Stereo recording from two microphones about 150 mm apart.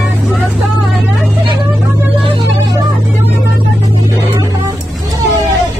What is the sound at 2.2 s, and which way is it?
Music, 30° right (ahead or behind).